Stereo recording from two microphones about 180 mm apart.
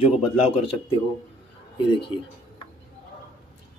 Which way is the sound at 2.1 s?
30° left (ahead or behind).